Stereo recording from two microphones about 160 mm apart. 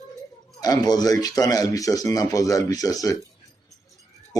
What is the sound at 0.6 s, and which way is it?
Speech, 25° left (ahead or behind).